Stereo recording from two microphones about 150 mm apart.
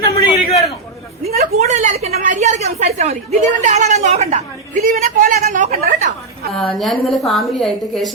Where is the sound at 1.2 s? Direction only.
50° right (ahead or behind); by 5.7 s 70° right (ahead or behind).